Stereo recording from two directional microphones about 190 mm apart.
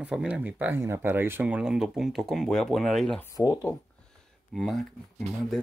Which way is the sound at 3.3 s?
15° left (ahead or behind).